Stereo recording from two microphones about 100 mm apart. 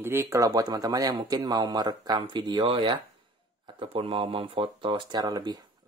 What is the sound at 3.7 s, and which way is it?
Speech, 70° right (ahead or behind).